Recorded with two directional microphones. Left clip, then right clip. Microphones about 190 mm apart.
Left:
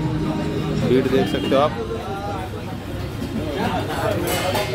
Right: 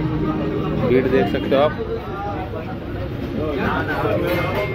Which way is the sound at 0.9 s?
20° left (ahead or behind).